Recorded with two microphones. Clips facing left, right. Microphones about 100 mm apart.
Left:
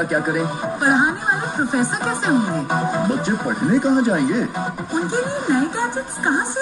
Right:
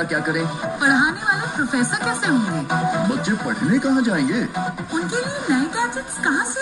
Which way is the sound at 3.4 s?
35° left (ahead or behind).